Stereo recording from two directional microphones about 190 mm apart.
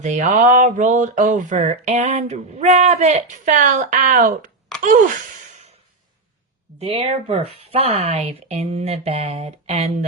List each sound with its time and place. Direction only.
0.0 s speech: 40° right (ahead or behind)
4.8 s gasp: 45° right (ahead or behind)
6.7 s speech: 30° right (ahead or behind)